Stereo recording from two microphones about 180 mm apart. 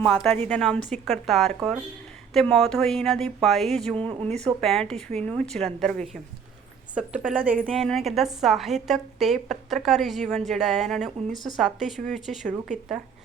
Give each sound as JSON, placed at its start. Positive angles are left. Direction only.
{"t": 0.0, "sound": "a woman's voice", "side_deg": 5}
{"t": 3.9, "sound": "speech", "side_deg": -30}
{"t": 4.6, "sound": "a woman's voice", "side_deg": 0}
{"t": 5.1, "sound": "speech", "side_deg": -35}
{"t": 5.4, "sound": "a woman's voice", "side_deg": 5}
{"t": 12.5, "sound": "speech", "side_deg": -40}